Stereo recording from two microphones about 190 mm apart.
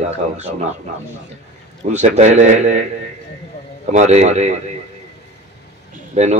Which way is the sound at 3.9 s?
35° right (ahead or behind).